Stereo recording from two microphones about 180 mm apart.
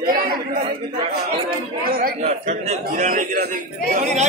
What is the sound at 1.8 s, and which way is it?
A man's voice, 50° right (ahead or behind).